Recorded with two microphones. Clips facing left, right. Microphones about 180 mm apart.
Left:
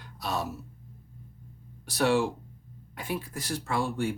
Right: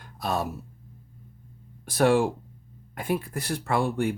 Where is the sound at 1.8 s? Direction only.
50° right (ahead or behind).